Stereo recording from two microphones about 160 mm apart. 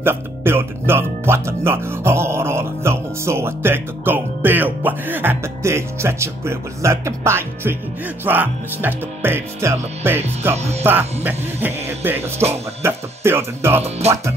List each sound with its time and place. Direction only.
0.0 s speech: 15° right (ahead or behind)
10.5 s speech: 45° right (ahead or behind)
10.8 s speech: 10° right (ahead or behind)
13.8 s speech: 40° right (ahead or behind)